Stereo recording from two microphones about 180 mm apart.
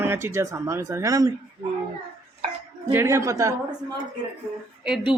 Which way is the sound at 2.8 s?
15° right (ahead or behind).